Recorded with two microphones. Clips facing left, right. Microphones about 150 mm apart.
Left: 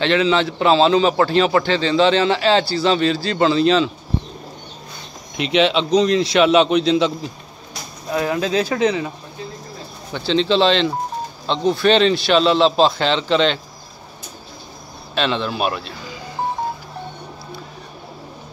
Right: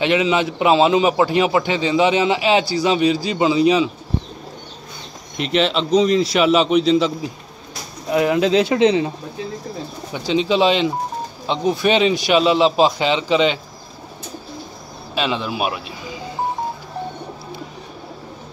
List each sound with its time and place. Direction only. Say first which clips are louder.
0.0 s a man's voice: even; 10° right (ahead or behind)
5.4 s a man's voice: left 2 dB; centre (ahead or behind)
8.1 s speech: right 4 dB; 20° right (ahead or behind)
10.1 s a man's voice: left 1 dB; 10° right (ahead or behind)
15.1 s a man's voice: left 1 dB; 10° right (ahead or behind)